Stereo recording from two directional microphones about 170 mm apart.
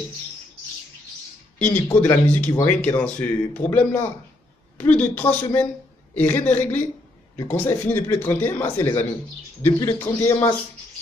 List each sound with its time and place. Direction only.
1.6 s speech: 10° left (ahead or behind)